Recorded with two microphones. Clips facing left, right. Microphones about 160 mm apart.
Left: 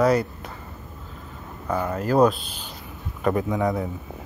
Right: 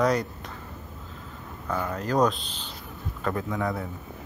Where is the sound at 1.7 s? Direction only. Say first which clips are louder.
Left 4 dB; 15° left (ahead or behind).